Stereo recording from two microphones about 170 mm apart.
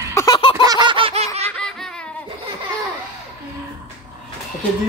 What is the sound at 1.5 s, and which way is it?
Laughter, 5° left (ahead or behind).